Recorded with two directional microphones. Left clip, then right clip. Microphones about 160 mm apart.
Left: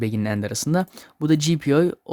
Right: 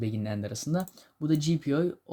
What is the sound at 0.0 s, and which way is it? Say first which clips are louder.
Speech: left 9 dB; 45° left (ahead or behind).